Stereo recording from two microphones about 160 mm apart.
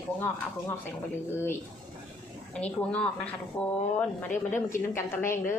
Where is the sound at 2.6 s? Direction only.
10° left (ahead or behind).